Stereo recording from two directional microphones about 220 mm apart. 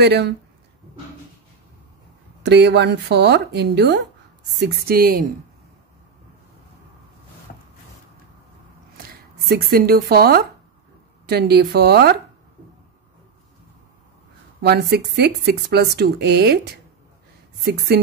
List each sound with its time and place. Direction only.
0.0 s speech: 50° right (ahead or behind)
2.4 s speech: 50° right (ahead or behind)
7.5 s a sound: 40° left (ahead or behind)
9.5 s speech: 45° right (ahead or behind)
14.6 s speech: 50° right (ahead or behind)
17.6 s speech: 45° right (ahead or behind)